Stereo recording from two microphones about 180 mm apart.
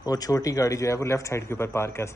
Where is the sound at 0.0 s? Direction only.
20° left (ahead or behind).